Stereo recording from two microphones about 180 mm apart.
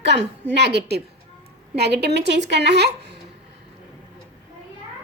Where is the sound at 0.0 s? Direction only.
70° right (ahead or behind).